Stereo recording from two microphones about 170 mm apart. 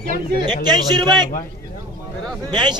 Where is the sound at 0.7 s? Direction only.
25° right (ahead or behind).